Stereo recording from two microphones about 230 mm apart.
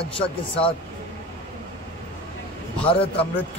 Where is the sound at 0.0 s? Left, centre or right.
Left.